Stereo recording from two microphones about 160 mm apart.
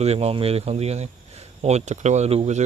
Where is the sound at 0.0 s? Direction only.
40° right (ahead or behind).